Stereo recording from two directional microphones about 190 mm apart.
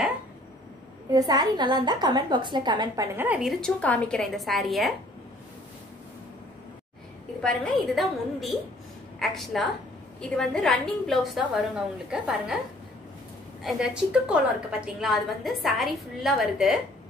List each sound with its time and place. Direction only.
1.1 s a woman's voice: 20° right (ahead or behind)
3.2 s a woman's voice: 5° right (ahead or behind)
7.4 s a woman's voice: 5° left (ahead or behind)
13.6 s a woman's voice: centre (ahead or behind)